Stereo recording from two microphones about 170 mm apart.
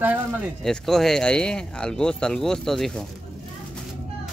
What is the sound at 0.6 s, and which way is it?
Speech, centre (ahead or behind).